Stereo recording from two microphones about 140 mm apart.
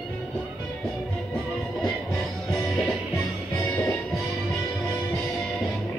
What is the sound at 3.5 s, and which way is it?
Music, 15° left (ahead or behind).